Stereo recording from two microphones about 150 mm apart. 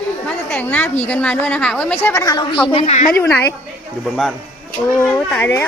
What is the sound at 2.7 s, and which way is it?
Speech, 35° left (ahead or behind).